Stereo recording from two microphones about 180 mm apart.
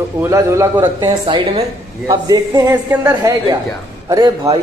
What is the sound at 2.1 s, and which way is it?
A man's voice, 20° right (ahead or behind).